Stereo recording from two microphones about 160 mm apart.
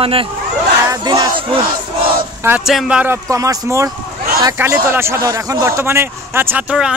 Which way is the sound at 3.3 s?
20° right (ahead or behind).